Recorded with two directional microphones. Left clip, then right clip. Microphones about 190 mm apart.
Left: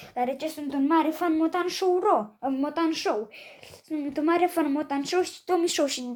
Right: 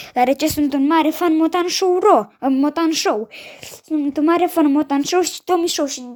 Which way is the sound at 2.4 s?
50° right (ahead or behind).